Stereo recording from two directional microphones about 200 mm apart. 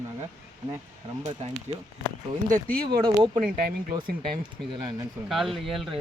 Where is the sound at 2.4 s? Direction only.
45° right (ahead or behind).